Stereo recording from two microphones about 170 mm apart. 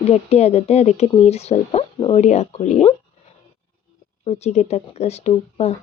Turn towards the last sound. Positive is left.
turn(degrees=40)  # may be behind; listen again after turning